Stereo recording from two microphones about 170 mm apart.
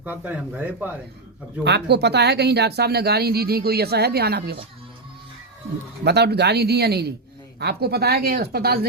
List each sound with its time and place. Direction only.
0.0 s speech: 10° right (ahead or behind)
1.6 s speech: 80° right
6.1 s speech: 75° right (ahead or behind)